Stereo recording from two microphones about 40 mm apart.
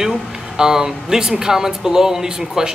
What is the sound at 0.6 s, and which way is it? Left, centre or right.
Speech, centre.